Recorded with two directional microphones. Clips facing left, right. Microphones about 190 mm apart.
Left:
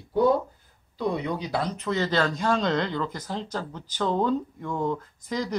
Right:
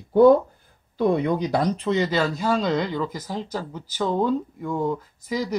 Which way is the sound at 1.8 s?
20° right (ahead or behind).